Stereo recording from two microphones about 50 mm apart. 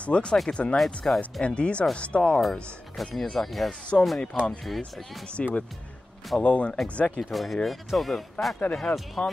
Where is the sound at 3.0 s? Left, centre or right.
Centre.